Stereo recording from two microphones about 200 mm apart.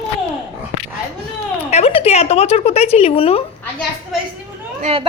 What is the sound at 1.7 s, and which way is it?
A woman's voice, 30° left (ahead or behind).